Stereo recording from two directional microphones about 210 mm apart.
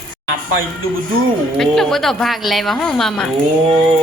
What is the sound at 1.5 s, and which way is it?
Speech, centre (ahead or behind).